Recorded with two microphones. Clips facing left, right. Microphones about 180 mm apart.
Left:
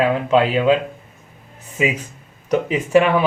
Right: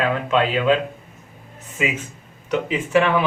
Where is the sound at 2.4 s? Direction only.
40° left (ahead or behind).